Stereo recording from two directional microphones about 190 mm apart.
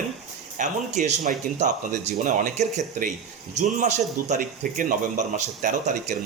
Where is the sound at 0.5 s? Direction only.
40° right (ahead or behind).